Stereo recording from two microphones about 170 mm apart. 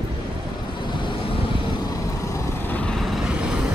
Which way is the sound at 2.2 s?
15° left (ahead or behind).